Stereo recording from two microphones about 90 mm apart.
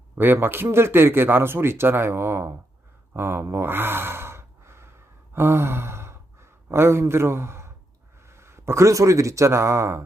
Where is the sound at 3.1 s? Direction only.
25° right (ahead or behind).